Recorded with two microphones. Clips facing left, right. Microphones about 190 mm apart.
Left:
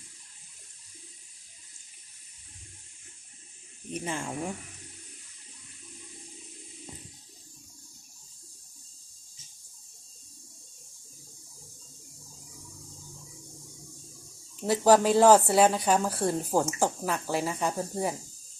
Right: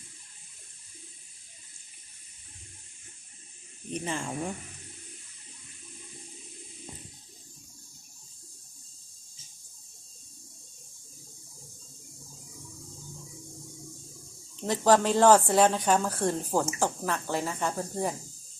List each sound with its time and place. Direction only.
3.9 s speech: 5° left (ahead or behind)
14.6 s speech: 10° left (ahead or behind)